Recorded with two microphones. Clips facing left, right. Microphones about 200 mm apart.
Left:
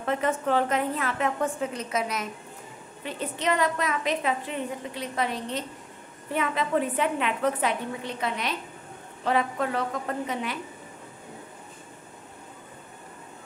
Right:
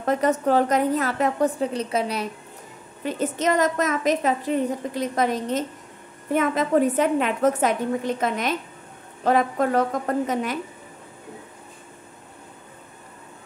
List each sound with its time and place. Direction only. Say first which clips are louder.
0.0 s a woman's voice: right 5 dB; 40° right (ahead or behind)
3.0 s a woman's voice: right 7 dB; 45° right (ahead or behind)